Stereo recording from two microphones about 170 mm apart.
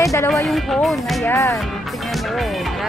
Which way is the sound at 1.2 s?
15° left (ahead or behind).